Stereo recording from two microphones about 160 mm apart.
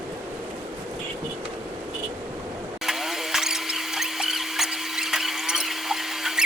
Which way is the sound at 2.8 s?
Centre (ahead or behind).